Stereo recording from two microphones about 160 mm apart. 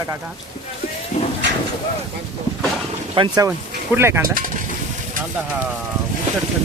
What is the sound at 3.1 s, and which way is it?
Speech, 25° right (ahead or behind).